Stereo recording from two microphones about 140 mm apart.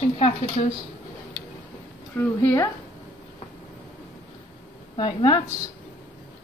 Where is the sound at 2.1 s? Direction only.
15° left (ahead or behind).